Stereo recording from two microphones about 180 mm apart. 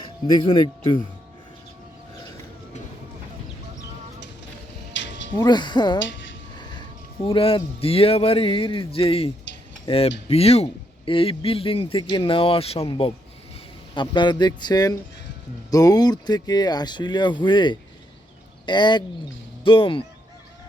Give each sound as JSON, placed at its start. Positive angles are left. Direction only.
{"t": 0.0, "sound": "music", "side_deg": 25}
{"t": 4.9, "sound": "music", "side_deg": 90}
{"t": 5.4, "sound": "speech", "side_deg": 25}
{"t": 7.3, "sound": "speech", "side_deg": 30}
{"t": 9.8, "sound": "cutlery", "side_deg": 30}
{"t": 10.2, "sound": "speech", "side_deg": 35}